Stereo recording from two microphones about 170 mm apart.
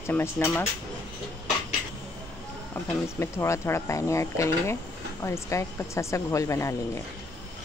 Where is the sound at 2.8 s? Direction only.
10° left (ahead or behind).